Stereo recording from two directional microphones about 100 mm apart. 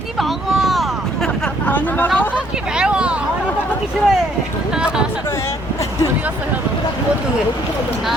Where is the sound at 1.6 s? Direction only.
15° left (ahead or behind).